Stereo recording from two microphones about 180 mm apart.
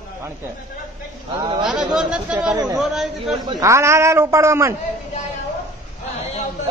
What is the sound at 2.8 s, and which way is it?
Speech, centre (ahead or behind).